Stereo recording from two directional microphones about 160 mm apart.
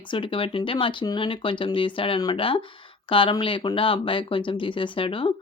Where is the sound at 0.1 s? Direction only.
30° left (ahead or behind).